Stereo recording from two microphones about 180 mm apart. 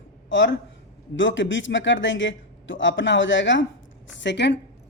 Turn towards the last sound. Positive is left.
turn(degrees=75)  # may be behind; listen again after turning